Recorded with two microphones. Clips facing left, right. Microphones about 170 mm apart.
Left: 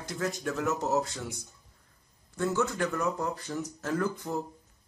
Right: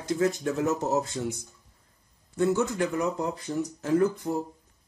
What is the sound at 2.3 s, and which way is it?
Speech, 20° right (ahead or behind).